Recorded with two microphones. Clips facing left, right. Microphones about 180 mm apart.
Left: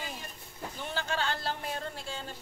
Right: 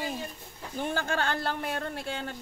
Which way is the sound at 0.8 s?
50° right (ahead or behind).